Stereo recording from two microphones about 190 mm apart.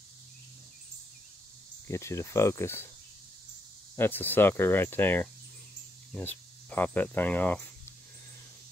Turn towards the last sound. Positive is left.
turn(degrees=10)  # may be behind; listen again after turning